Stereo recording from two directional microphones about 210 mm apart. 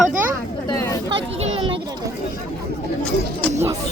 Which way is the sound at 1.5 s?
25° right (ahead or behind).